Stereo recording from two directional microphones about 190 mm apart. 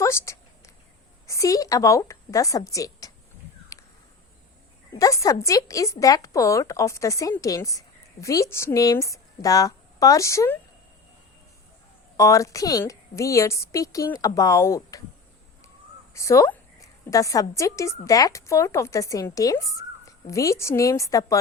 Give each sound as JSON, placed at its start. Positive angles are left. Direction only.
{"t": 0.0, "sound": "a sound", "side_deg": 15}
{"t": 1.3, "sound": "a woman's voice", "side_deg": 15}
{"t": 4.9, "sound": "a woman's voice", "side_deg": 15}
{"t": 12.1, "sound": "a woman's voice", "side_deg": 15}
{"t": 16.1, "sound": "a sound", "side_deg": 15}
{"t": 17.5, "sound": "a woman's voice", "side_deg": 15}